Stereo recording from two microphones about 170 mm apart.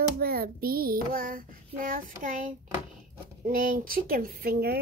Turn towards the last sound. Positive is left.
turn(degrees=-65)  # may be behind; listen again after turning